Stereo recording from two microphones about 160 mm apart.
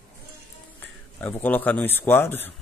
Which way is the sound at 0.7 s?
10° left (ahead or behind).